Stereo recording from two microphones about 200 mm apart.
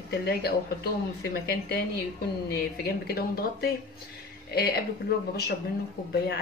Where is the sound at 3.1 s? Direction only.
50° left (ahead or behind).